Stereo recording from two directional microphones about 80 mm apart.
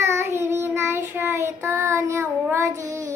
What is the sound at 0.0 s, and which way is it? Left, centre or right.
Child singing, right.